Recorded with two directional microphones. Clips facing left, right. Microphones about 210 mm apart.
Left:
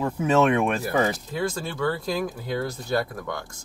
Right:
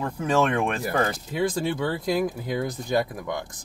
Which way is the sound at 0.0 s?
5° left (ahead or behind).